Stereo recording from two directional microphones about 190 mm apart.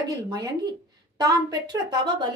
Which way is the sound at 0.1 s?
20° right (ahead or behind).